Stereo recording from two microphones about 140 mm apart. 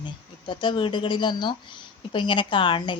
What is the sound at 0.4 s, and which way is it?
A woman's voice, 35° left (ahead or behind).